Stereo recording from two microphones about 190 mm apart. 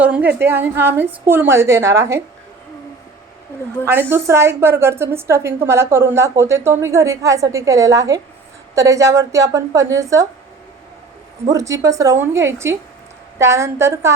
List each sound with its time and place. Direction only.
0.0 s a sound: 10° right (ahead or behind)
0.3 s a woman's voice: 10° right (ahead or behind)
4.1 s a woman's voice: 15° right (ahead or behind)
11.5 s a woman's voice: 15° right (ahead or behind)